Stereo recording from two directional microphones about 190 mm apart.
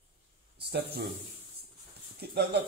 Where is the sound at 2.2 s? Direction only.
60° right (ahead or behind).